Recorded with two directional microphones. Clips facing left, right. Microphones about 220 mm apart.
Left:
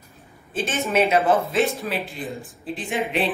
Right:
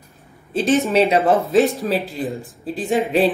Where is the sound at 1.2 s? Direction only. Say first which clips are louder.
Right 3 dB; centre (ahead or behind).